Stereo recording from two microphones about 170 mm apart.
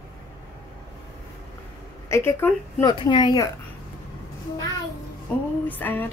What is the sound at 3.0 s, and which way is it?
Speech, 25° left (ahead or behind).